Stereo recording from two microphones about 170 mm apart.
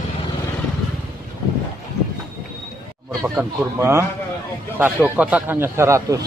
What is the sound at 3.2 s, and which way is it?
Speech, 15° right (ahead or behind).